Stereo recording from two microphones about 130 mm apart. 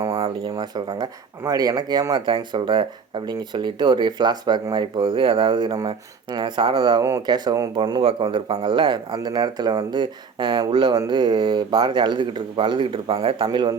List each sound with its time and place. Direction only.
0.0 s speech: 30° right (ahead or behind)